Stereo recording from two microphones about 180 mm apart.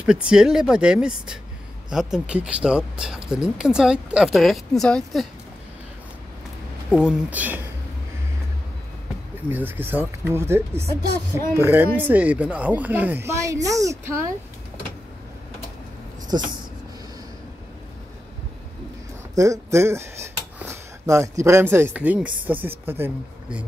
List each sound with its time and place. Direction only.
0.0 s speech: 5° right (ahead or behind)
6.9 s speech: 5° right (ahead or behind)
9.5 s speech: 10° right (ahead or behind)
16.3 s speech: 20° right (ahead or behind)
19.3 s speech: 20° right (ahead or behind)